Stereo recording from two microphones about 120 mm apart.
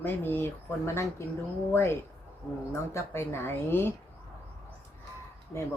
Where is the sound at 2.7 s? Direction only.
20° left (ahead or behind).